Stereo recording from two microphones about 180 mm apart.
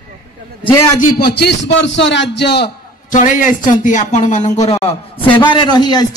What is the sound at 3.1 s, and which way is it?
A man's voice, 45° left (ahead or behind).